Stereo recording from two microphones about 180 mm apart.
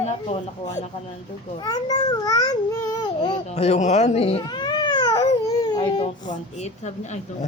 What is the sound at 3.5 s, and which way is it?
Speech, 35° left (ahead or behind).